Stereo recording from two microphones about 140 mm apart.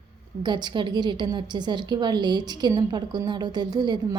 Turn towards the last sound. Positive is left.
turn(degrees=-30)  # may be behind; listen again after turning